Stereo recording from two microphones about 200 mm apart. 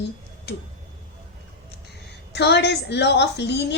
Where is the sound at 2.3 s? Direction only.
60° left (ahead or behind).